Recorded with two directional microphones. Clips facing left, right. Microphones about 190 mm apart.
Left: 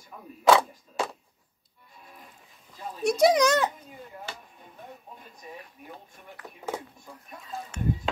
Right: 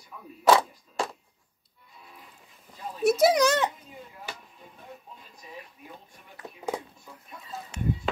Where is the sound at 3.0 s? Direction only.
5° right (ahead or behind).